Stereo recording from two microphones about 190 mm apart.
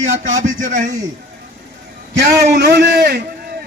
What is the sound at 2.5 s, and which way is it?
Speech, 60° right (ahead or behind).